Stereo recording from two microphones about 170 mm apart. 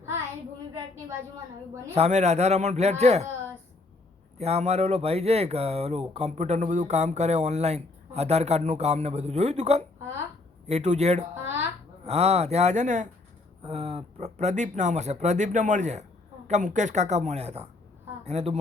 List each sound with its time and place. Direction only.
1.9 s speech: 40° right (ahead or behind)
4.4 s speech: 40° right (ahead or behind)